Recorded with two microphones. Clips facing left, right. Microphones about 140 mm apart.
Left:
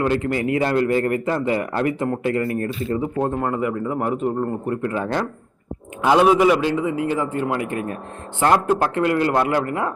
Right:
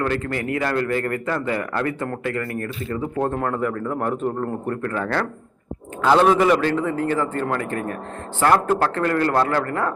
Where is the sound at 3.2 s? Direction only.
5° left (ahead or behind).